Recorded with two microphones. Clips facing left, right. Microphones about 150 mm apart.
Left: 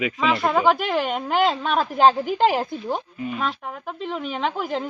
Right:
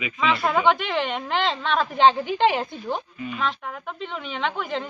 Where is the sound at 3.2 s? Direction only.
40° left (ahead or behind).